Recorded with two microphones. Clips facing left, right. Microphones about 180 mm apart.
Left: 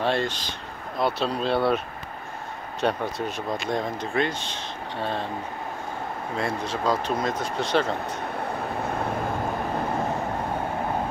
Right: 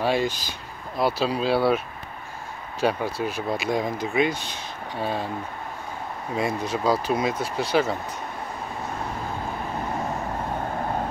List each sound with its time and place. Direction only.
0.0 s speech: 10° right (ahead or behind)
2.8 s speech: 5° right (ahead or behind)
6.3 s speech: 10° right (ahead or behind)